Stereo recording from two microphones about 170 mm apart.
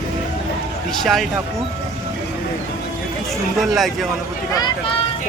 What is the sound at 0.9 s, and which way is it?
Speech, centre (ahead or behind).